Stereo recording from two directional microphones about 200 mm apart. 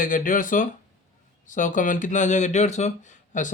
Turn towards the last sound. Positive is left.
turn(degrees=40)  # may be behind; listen again after turning